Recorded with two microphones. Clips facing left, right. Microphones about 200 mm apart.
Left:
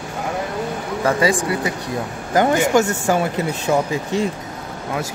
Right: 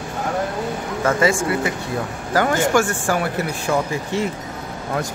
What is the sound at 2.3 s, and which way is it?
Speech, 20° left (ahead or behind).